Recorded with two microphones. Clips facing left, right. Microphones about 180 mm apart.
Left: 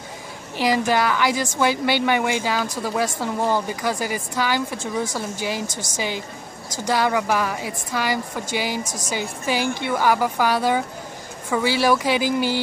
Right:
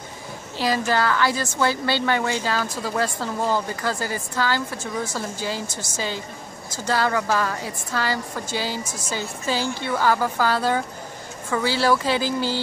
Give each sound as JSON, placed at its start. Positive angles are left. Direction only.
{"t": 0.6, "sound": "speech", "side_deg": 15}